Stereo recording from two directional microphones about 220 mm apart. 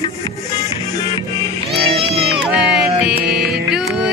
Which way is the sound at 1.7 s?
25° right (ahead or behind).